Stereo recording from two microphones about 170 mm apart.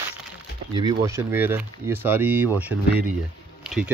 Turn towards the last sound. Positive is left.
turn(degrees=-5)  # may be behind; listen again after turning